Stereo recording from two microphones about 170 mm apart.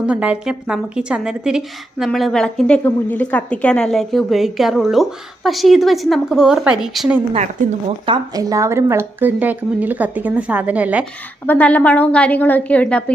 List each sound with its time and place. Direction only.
0.0 s a woman's voice: 5° right (ahead or behind)
8.0 s speech: 25° right (ahead or behind); by 11.0 s 10° right (ahead or behind)
11.4 s a woman's voice: 10° left (ahead or behind)